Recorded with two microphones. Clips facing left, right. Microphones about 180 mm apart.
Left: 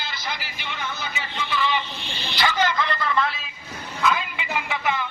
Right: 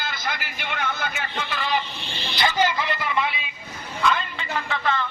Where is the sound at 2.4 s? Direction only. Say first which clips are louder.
Even; 15° right (ahead or behind).